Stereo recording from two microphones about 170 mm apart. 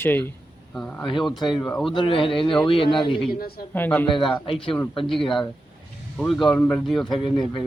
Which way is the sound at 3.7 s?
10° left (ahead or behind).